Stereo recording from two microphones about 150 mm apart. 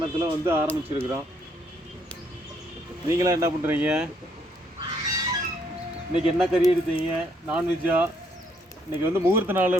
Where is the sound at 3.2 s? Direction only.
20° right (ahead or behind); by 4.1 s 5° right (ahead or behind).